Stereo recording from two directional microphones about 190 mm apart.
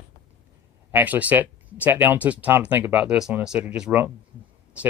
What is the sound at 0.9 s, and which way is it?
Speech, 10° right (ahead or behind).